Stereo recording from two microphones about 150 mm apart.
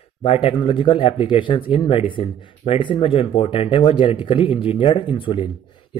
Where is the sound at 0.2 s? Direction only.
40° left (ahead or behind).